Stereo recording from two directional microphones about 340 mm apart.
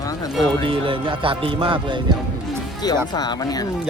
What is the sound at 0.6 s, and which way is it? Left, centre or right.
Speech, centre.